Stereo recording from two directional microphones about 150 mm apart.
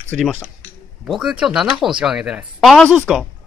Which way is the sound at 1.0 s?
5° right (ahead or behind).